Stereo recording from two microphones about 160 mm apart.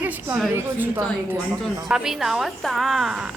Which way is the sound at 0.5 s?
15° right (ahead or behind).